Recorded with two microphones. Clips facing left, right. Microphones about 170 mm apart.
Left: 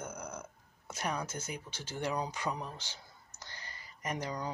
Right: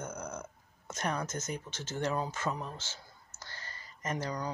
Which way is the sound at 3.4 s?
15° left (ahead or behind).